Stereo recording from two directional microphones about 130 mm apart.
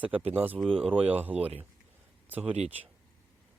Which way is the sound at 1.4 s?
50° right (ahead or behind).